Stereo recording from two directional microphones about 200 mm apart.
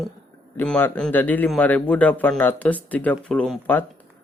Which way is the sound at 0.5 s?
10° left (ahead or behind).